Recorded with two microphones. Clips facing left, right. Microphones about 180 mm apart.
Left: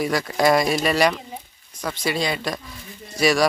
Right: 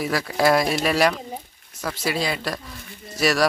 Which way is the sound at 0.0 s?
Centre (ahead or behind).